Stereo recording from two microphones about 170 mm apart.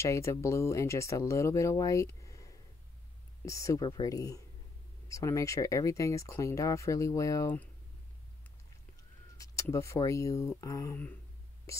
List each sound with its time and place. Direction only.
0.0 s speech: 15° left (ahead or behind)
9.4 s speech: 20° left (ahead or behind)